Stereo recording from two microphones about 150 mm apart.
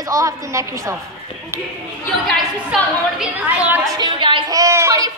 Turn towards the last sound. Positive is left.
turn(degrees=-20)  # may be behind; listen again after turning